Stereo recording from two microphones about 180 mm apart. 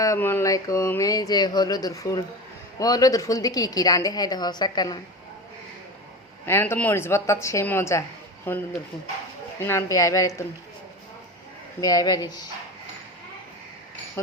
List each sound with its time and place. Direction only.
0.0 s a woman's voice: 15° left (ahead or behind)
6.4 s a woman's voice: 15° left (ahead or behind)
11.8 s a woman's voice: 20° left (ahead or behind)